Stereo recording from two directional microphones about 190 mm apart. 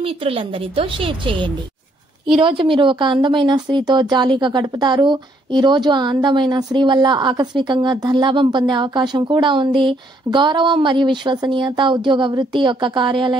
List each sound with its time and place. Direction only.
0.0 s speech: 30° right (ahead or behind)